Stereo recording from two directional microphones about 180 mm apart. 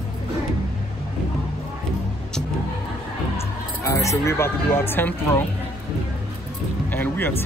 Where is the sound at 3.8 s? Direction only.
15° left (ahead or behind).